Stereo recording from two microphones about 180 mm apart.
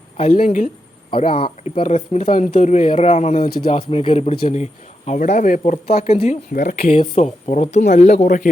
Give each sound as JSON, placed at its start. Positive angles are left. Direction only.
{"t": 0.2, "sound": "speech", "side_deg": 40}
{"t": 1.3, "sound": "speech", "side_deg": 30}
{"t": 6.5, "sound": "speech", "side_deg": 55}
{"t": 6.8, "sound": "speech", "side_deg": 35}